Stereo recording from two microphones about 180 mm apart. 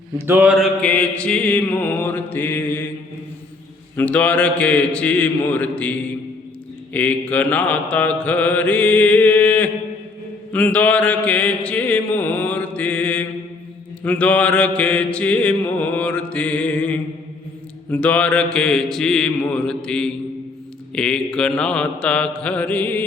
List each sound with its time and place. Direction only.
0.3 s mantra: 5° right (ahead or behind); by 2.8 s 10° left (ahead or behind)
3.9 s mantra: 5° left (ahead or behind)
17.9 s speech: 5° left (ahead or behind)